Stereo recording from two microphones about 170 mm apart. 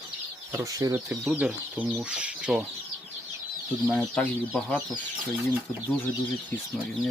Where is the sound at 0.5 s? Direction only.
20° right (ahead or behind).